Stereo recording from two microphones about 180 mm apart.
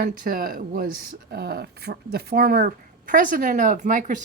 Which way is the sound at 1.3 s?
60° right (ahead or behind).